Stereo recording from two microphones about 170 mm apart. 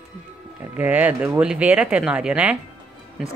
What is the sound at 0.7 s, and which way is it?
Speech, 10° right (ahead or behind).